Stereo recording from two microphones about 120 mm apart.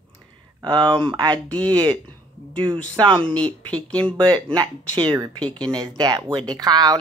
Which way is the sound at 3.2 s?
10° left (ahead or behind).